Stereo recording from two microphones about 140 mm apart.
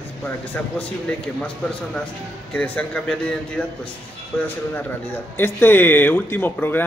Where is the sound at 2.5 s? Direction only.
10° left (ahead or behind).